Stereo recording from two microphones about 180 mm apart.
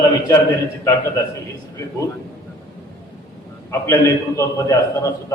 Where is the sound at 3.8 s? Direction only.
15° left (ahead or behind).